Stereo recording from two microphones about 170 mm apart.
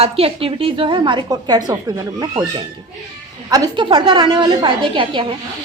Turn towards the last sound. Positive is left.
turn(degrees=-30)  # may be behind; listen again after turning